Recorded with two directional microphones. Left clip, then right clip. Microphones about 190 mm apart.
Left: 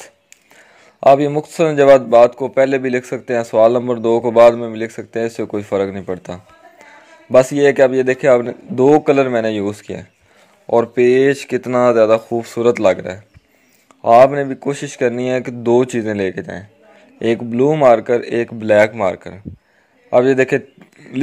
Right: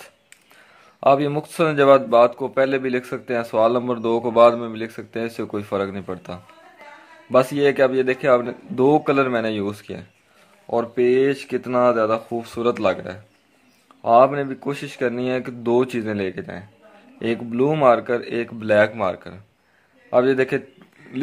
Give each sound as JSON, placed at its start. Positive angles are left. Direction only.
{"t": 0.9, "sound": "a man's voice", "side_deg": 20}
{"t": 10.7, "sound": "a man's voice", "side_deg": 35}